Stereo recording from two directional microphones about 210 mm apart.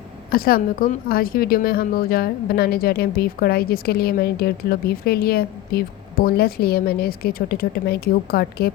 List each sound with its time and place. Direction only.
0.3 s a woman's voice: 45° left (ahead or behind)